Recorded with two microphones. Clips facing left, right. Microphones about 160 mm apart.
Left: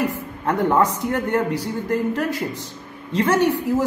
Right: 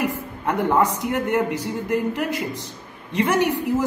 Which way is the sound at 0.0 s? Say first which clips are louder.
Left 1 dB; 15° right (ahead or behind).